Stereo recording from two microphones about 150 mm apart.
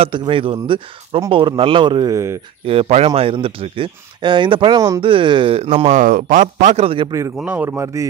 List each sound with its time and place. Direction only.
0.0 s speech: 35° right (ahead or behind)
2.6 s speech: 40° right (ahead or behind)
5.7 s a man's voice: 50° right (ahead or behind)
7.1 s speech: 20° right (ahead or behind)